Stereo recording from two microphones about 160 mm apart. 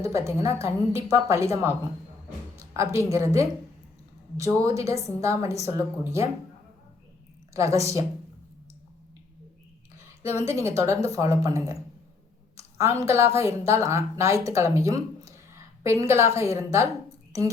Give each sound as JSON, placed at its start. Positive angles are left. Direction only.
{"t": 0.0, "sound": "a woman's voice", "side_deg": -20}
{"t": 7.5, "sound": "a woman's voice", "side_deg": -20}
{"t": 10.5, "sound": "a woman's voice", "side_deg": -15}